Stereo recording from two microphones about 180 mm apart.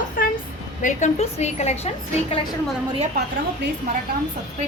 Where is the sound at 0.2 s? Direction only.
50° left (ahead or behind).